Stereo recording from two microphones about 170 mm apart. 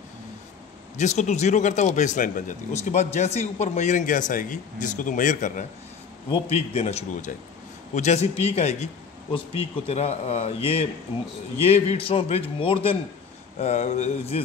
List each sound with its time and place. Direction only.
0.9 s speech: 45° left (ahead or behind)
6.3 s a man's voice: 35° left (ahead or behind)